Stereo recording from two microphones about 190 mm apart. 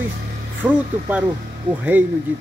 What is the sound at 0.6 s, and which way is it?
Speech, 15° right (ahead or behind).